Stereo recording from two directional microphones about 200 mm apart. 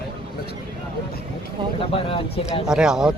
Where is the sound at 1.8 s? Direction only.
25° left (ahead or behind).